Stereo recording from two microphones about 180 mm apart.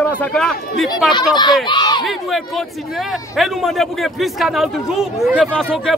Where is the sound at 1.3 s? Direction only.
25° left (ahead or behind).